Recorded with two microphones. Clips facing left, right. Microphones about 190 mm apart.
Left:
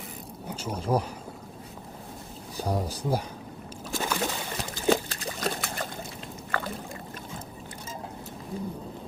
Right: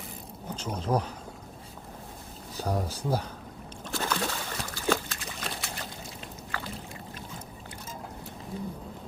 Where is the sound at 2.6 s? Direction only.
10° left (ahead or behind).